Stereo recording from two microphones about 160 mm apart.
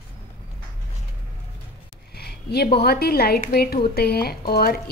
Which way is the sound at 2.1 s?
80° left.